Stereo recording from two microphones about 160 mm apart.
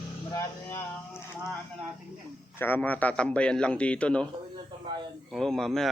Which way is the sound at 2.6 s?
10° left (ahead or behind).